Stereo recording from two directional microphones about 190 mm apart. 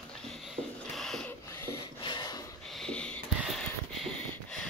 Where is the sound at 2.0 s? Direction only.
20° left (ahead or behind).